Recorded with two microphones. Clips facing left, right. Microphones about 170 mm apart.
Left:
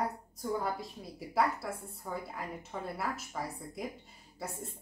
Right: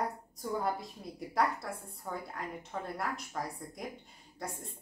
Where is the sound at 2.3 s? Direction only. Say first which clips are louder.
Right 1 dB; 5° left (ahead or behind).